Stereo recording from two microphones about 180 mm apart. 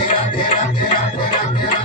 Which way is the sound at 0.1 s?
30° left (ahead or behind).